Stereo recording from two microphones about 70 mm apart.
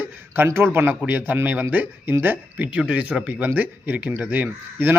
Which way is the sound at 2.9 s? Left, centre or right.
Centre.